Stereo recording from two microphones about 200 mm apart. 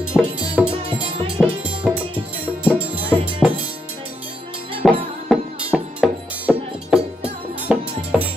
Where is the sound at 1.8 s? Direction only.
5° right (ahead or behind).